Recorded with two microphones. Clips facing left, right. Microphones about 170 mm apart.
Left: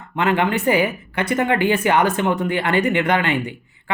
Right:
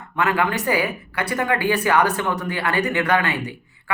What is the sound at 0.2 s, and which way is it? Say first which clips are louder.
A woman's voice: left 2 dB; 25° left (ahead or behind).